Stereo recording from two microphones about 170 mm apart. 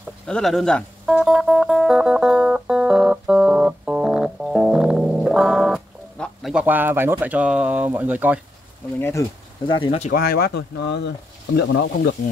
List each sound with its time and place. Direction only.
0.3 s music: centre (ahead or behind)
6.5 s speech: 10° right (ahead or behind)
9.7 s speech: 30° left (ahead or behind)
10.1 s speech: 65° left (ahead or behind); by 12.2 s 90° left